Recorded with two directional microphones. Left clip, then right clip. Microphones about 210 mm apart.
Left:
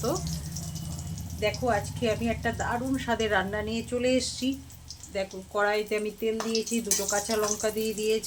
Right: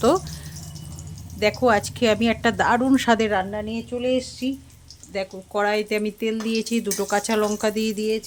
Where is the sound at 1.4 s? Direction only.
50° right (ahead or behind).